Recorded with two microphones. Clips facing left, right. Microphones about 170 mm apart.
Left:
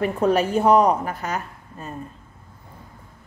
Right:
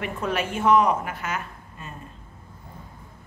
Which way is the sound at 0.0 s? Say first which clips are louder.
Left 8 dB; 35° left (ahead or behind).